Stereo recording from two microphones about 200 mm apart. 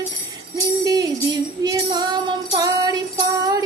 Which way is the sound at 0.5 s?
15° right (ahead or behind).